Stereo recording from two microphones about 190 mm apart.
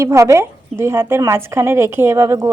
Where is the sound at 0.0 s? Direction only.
15° right (ahead or behind).